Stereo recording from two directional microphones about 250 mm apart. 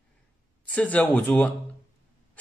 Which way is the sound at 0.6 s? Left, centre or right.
Centre.